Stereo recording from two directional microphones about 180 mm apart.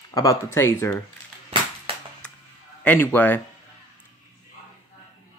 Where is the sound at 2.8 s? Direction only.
10° left (ahead or behind).